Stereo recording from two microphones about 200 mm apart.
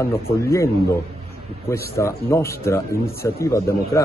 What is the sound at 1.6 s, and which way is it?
A man's voice, 15° left (ahead or behind).